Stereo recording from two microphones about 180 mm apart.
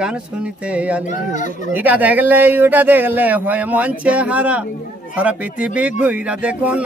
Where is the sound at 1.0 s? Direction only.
45° left (ahead or behind).